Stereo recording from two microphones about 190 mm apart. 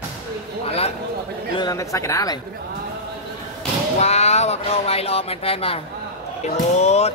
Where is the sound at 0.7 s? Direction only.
30° left (ahead or behind).